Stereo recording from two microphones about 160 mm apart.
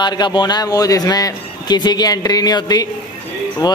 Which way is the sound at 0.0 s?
25° left (ahead or behind).